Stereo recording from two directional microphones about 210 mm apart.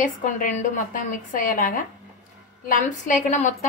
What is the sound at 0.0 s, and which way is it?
A woman's voice, 40° left (ahead or behind).